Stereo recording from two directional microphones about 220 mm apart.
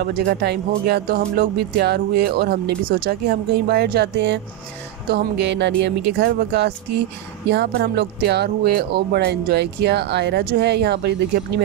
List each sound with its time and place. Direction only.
0.0 s speech: 45° right (ahead or behind)